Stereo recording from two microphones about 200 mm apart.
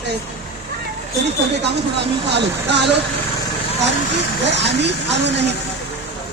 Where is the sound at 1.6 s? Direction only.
60° right (ahead or behind).